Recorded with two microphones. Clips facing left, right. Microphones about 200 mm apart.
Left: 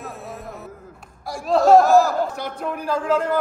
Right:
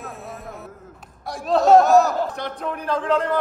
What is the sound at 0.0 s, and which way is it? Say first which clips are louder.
Music: left 1 dB; centre (ahead or behind).